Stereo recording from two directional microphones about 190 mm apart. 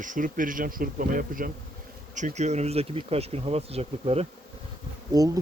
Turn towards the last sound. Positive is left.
turn(degrees=-20)  # may be behind; listen again after turning